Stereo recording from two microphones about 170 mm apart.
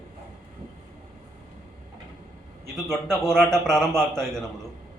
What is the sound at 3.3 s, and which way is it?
Speech, 5° left (ahead or behind).